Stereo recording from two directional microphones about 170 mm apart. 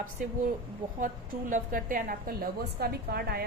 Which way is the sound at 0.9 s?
50° right (ahead or behind).